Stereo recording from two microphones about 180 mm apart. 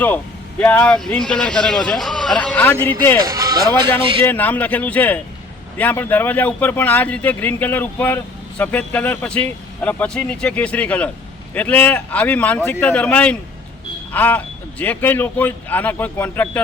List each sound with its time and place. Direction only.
0.6 s a man's voice: 10° left (ahead or behind)
3.2 s speech: 20° right (ahead or behind)
4.3 s speech: 10° left (ahead or behind)